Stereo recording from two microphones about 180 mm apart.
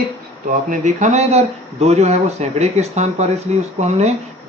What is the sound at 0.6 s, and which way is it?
Speech, 45° right (ahead or behind).